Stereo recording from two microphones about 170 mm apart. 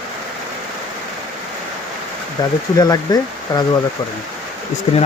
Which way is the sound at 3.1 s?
25° left (ahead or behind).